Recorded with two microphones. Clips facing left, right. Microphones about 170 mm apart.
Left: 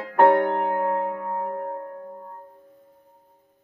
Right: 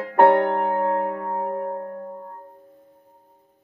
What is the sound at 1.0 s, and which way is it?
Music, 45° right (ahead or behind).